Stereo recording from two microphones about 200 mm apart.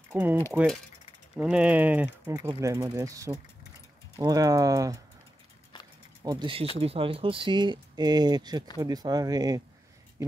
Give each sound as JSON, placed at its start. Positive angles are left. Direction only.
{"t": 0.1, "sound": "mechanisms", "side_deg": -10}
{"t": 1.3, "sound": "speech", "side_deg": -5}
{"t": 6.2, "sound": "speech", "side_deg": -20}